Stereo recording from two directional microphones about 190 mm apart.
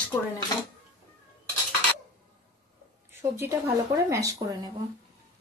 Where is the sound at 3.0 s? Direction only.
15° right (ahead or behind).